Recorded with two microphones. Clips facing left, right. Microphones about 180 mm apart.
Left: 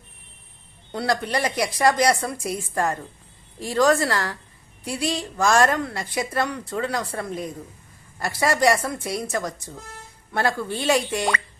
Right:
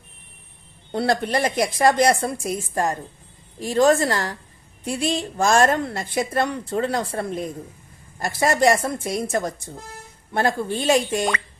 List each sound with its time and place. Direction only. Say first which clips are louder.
0.9 s speech: right 3 dB; 25° right (ahead or behind)
4.8 s a woman's voice: right 2 dB; 50° right (ahead or behind)
5.1 s speech: right 1 dB; 25° right (ahead or behind)